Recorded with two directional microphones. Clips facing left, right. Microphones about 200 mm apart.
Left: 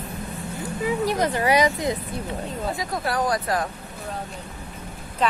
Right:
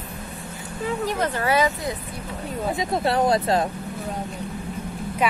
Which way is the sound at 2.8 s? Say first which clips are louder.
Right 6 dB; 25° right (ahead or behind).